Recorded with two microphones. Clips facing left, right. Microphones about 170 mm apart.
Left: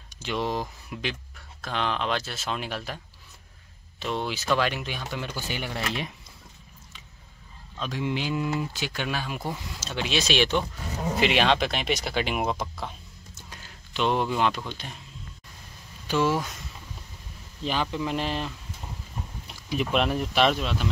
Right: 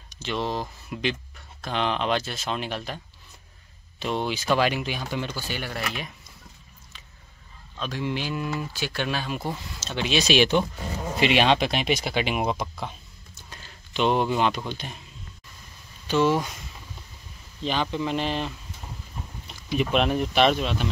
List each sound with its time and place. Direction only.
0.2 s speech: 10° left (ahead or behind)
0.9 s speech: centre (ahead or behind)
4.0 s speech: centre (ahead or behind)
5.3 s speech: 15° left (ahead or behind)
7.8 s speech: 15° left (ahead or behind); by 12.9 s centre (ahead or behind)
13.9 s speech: 5° right (ahead or behind)
16.1 s speech: 5° left (ahead or behind)
17.6 s speech: 5° left (ahead or behind)
19.8 s speech: centre (ahead or behind)